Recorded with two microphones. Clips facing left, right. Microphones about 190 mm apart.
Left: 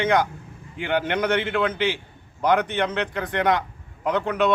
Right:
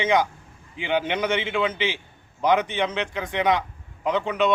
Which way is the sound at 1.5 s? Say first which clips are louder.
Left 1 dB; centre (ahead or behind).